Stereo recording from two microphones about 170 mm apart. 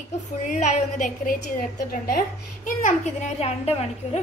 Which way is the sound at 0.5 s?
45° left (ahead or behind).